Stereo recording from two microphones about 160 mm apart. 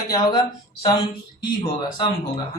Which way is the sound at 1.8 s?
25° left (ahead or behind).